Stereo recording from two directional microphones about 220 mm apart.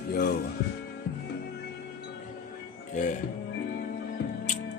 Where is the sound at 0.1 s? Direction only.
45° left (ahead or behind).